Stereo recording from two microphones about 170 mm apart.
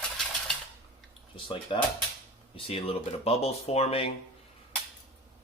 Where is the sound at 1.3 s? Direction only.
30° left (ahead or behind).